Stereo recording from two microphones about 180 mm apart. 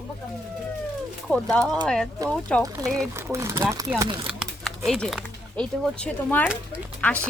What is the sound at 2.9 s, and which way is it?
Speech, 15° right (ahead or behind).